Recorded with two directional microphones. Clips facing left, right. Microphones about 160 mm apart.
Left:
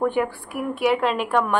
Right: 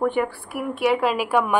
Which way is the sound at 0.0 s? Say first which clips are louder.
Even; centre (ahead or behind).